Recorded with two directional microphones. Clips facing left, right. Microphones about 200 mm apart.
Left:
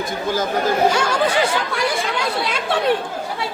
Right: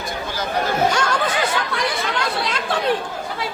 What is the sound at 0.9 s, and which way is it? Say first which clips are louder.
Chatter: left 3 dB; 10° left (ahead or behind).